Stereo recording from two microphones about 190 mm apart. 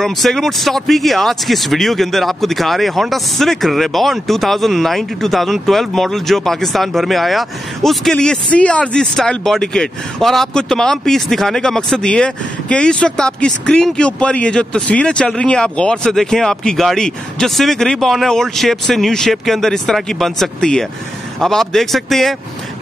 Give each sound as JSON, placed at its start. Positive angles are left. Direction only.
{"t": 0.0, "sound": "speech", "side_deg": 0}